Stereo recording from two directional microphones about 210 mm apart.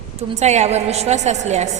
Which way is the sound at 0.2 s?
30° right (ahead or behind).